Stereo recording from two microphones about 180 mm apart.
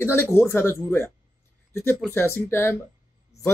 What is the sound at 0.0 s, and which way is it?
Speech, 15° left (ahead or behind).